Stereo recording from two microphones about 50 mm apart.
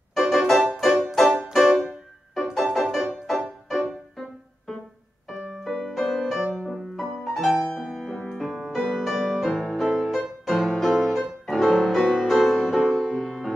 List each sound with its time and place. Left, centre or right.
0.1 s music: centre
5.3 s music: centre